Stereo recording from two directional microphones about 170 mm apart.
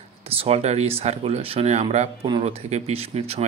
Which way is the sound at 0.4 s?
40° right (ahead or behind).